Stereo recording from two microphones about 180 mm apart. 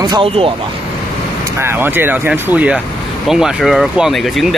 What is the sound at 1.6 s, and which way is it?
Speech, 10° right (ahead or behind).